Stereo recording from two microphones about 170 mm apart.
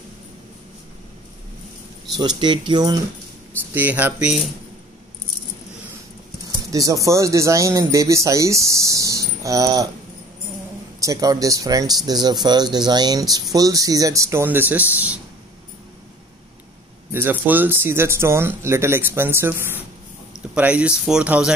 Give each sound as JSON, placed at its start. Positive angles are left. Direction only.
{"t": 2.1, "sound": "speech", "side_deg": -25}
{"t": 3.7, "sound": "speech", "side_deg": -10}
{"t": 6.7, "sound": "speech", "side_deg": -20}
{"t": 11.0, "sound": "speech", "side_deg": -20}
{"t": 17.1, "sound": "speech", "side_deg": -10}